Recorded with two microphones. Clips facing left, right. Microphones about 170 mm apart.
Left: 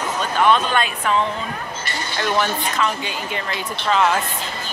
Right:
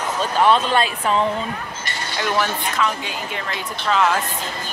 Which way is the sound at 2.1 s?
Centre (ahead or behind).